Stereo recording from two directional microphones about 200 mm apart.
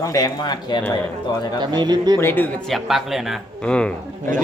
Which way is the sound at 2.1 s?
10° left (ahead or behind).